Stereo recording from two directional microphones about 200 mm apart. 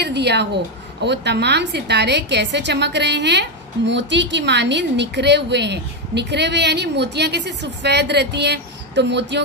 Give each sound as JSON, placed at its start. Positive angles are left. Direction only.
{"t": 0.0, "sound": "a woman's voice", "side_deg": -55}